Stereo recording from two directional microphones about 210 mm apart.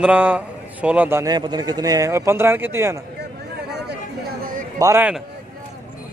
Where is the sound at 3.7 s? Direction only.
50° right (ahead or behind).